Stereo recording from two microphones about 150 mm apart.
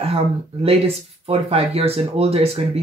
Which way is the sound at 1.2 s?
40° right (ahead or behind).